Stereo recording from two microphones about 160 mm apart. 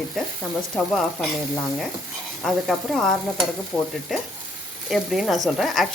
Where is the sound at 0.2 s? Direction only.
Centre (ahead or behind).